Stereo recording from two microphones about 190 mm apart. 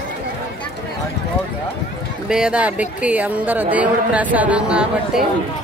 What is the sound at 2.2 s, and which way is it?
A woman's voice, 5° right (ahead or behind).